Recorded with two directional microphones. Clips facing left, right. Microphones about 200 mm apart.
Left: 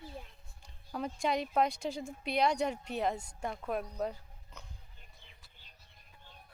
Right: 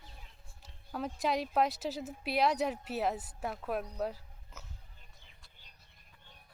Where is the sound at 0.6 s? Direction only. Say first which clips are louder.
Even; centre (ahead or behind).